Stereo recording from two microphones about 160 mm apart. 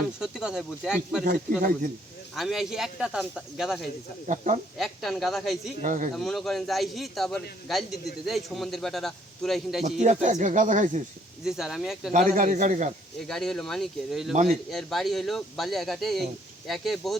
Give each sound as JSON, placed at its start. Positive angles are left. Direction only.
{"t": 0.2, "sound": "a man's voice", "side_deg": -5}
{"t": 1.2, "sound": "speech", "side_deg": -60}
{"t": 2.3, "sound": "a man's voice", "side_deg": 0}
{"t": 4.3, "sound": "speech", "side_deg": -50}
{"t": 4.8, "sound": "a man's voice", "side_deg": 0}
{"t": 5.8, "sound": "speech", "side_deg": -55}
{"t": 6.1, "sound": "a man's voice", "side_deg": 0}
{"t": 10.0, "sound": "speech", "side_deg": -50}
{"t": 11.4, "sound": "a man's voice", "side_deg": 0}
{"t": 12.1, "sound": "speech", "side_deg": -55}
{"t": 13.1, "sound": "a man's voice", "side_deg": 5}